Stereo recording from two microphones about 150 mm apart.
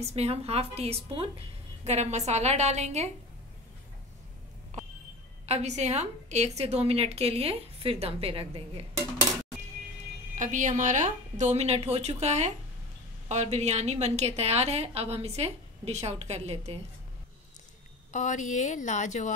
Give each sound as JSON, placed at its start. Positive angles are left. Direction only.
{"t": 0.0, "sound": "a woman's voice", "side_deg": -45}
{"t": 5.5, "sound": "a woman's voice", "side_deg": -50}
{"t": 10.3, "sound": "a woman's voice", "side_deg": -55}
{"t": 18.1, "sound": "a woman's voice", "side_deg": 55}